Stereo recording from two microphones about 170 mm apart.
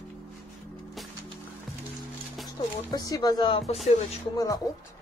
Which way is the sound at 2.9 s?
20° left (ahead or behind).